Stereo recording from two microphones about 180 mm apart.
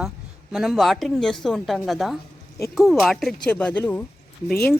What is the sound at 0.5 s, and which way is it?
Speech, centre (ahead or behind).